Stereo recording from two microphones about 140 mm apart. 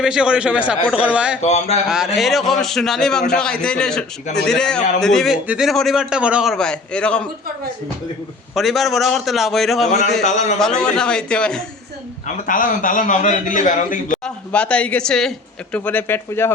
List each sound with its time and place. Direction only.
0.0 s a man's voice: 5° right (ahead or behind)
1.4 s speech: 50° left (ahead or behind)
1.9 s a man's voice: 5° right (ahead or behind)
8.5 s a man's voice: centre (ahead or behind)
10.2 s a man's voice: 55° left (ahead or behind)
10.8 s a man's voice: 5° left (ahead or behind)
12.5 s a man's voice: 70° left (ahead or behind)
14.3 s speech: 10° left (ahead or behind)